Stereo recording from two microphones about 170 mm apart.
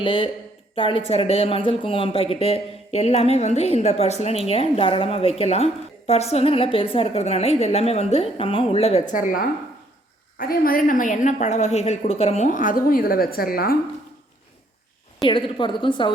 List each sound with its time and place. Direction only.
0.0 s a woman's voice: 30° left (ahead or behind); by 13.7 s 60° left (ahead or behind)
15.2 s a woman's voice: 30° left (ahead or behind)